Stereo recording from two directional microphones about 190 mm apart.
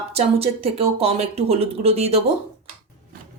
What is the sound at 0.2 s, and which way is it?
Speech, 30° right (ahead or behind).